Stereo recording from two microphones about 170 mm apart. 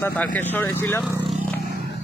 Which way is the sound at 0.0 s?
10° left (ahead or behind).